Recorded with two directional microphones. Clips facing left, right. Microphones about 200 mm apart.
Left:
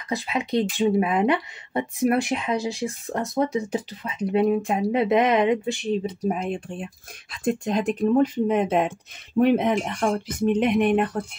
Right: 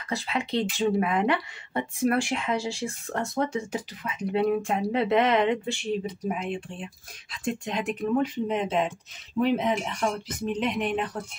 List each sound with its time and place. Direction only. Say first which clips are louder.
0.1 s speech: left 4 dB; 15° left (ahead or behind)
6.2 s speech: left 4 dB; 40° left (ahead or behind)
8.5 s speech: left 5 dB; 50° left (ahead or behind)